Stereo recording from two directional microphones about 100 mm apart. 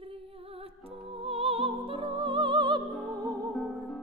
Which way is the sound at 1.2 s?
75° right (ahead or behind).